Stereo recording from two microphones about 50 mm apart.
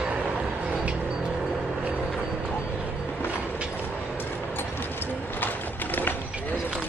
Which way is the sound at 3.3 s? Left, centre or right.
Right.